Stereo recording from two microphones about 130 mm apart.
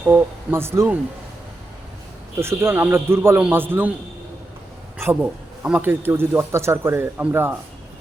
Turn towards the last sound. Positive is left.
turn(degrees=-15)  # may be behind; listen again after turning